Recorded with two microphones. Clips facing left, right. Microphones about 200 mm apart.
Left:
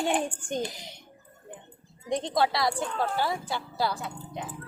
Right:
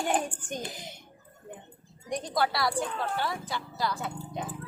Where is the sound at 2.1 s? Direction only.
25° left (ahead or behind).